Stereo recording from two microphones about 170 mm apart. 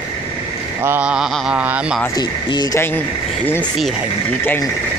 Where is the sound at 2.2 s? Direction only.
25° left (ahead or behind).